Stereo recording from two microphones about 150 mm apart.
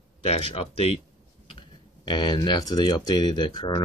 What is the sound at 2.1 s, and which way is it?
Speech, 30° left (ahead or behind).